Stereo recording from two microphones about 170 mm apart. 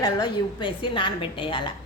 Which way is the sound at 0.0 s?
25° left (ahead or behind).